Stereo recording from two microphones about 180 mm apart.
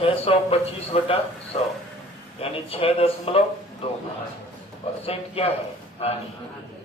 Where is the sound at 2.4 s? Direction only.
30° left (ahead or behind).